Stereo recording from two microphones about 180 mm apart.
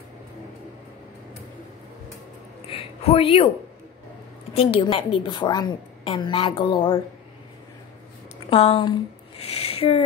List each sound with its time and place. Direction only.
2.7 s a sound: 35° left (ahead or behind)
4.6 s a woman's voice: 30° left (ahead or behind)
8.5 s speech: 35° left (ahead or behind)